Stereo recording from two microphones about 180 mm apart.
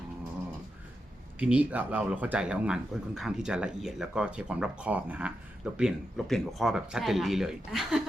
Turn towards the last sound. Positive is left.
turn(degrees=0)  # may be behind; listen again after turning